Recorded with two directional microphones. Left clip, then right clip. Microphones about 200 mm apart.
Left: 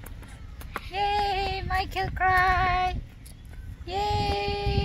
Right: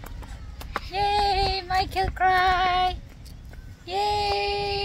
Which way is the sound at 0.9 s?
5° right (ahead or behind).